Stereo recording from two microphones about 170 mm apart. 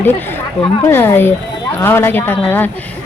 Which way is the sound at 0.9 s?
15° left (ahead or behind).